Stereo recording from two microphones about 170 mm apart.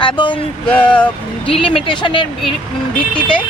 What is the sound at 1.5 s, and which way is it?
Speech, 30° left (ahead or behind).